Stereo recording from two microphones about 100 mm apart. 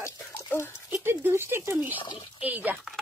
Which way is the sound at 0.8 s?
20° right (ahead or behind).